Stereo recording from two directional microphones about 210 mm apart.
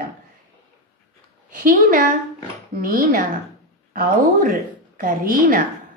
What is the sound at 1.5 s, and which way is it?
A woman's voice, 40° right (ahead or behind).